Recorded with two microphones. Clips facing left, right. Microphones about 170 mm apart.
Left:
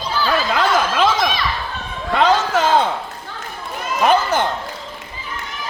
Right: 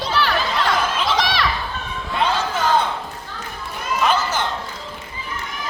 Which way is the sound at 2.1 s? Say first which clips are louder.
Left 6 dB; 85° left.